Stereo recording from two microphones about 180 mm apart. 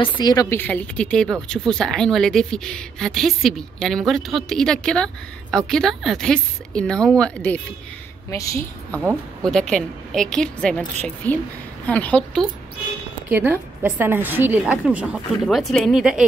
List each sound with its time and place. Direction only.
0.0 s a woman's voice: 25° left (ahead or behind); by 7.6 s 5° left (ahead or behind)
8.3 s a woman's voice: 15° left (ahead or behind)
9.4 s a woman's voice: 5° left (ahead or behind)
13.3 s a woman's voice: 10° right (ahead or behind)